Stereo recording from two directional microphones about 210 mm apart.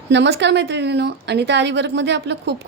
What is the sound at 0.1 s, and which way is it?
A woman's voice, 55° right (ahead or behind).